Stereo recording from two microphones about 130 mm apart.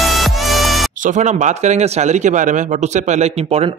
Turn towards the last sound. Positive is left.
turn(degrees=-55)  # may be behind; listen again after turning